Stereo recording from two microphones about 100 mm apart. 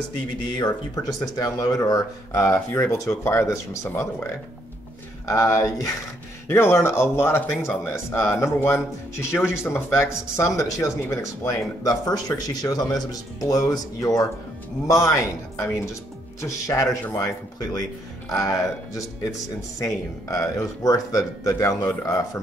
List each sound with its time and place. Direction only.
0.9 s speech: 40° left (ahead or behind)